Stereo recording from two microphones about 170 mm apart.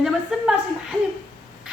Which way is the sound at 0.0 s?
5° right (ahead or behind).